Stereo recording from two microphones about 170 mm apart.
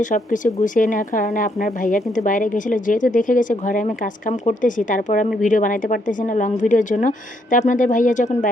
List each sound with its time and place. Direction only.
0.0 s speech: 50° left (ahead or behind)